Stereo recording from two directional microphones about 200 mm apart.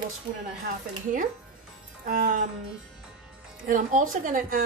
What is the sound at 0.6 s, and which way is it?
A woman's voice, 40° right (ahead or behind).